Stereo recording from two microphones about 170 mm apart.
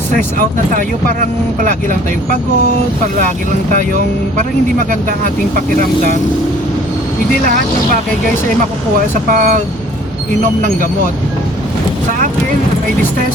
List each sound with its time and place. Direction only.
1.6 s speech: 50° right (ahead or behind)
9.3 s speech: 50° right (ahead or behind)